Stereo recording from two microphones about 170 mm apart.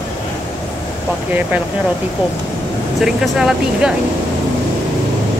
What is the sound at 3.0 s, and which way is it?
Speech, 5° right (ahead or behind).